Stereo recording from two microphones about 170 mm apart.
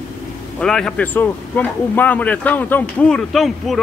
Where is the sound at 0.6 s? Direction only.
5° left (ahead or behind).